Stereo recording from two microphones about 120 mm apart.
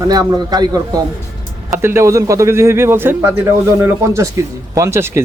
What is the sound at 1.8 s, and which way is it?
A man's voice, 20° right (ahead or behind).